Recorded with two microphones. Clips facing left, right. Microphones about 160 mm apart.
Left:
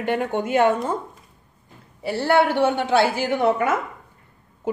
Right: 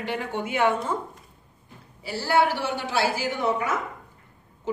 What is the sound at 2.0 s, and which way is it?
A woman's voice, 60° left (ahead or behind).